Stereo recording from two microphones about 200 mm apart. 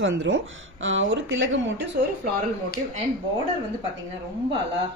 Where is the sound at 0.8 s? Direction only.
75° right (ahead or behind).